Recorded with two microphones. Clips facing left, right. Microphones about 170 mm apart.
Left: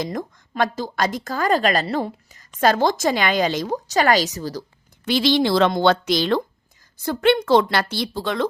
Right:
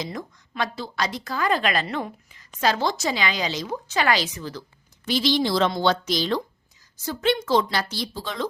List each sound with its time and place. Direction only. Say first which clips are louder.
0.0 s a woman's voice: left 5 dB; 50° left (ahead or behind)
5.0 s a woman's voice: left 4 dB; 65° left (ahead or behind)